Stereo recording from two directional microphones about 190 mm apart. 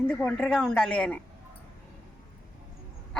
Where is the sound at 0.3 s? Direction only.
5° left (ahead or behind).